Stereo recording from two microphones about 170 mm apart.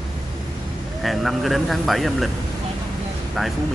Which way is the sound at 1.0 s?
Centre (ahead or behind).